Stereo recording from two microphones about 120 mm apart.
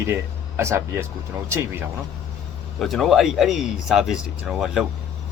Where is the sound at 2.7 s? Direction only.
Centre (ahead or behind).